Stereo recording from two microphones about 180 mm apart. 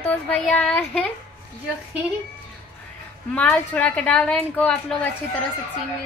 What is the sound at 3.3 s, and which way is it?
Speech, 10° left (ahead or behind).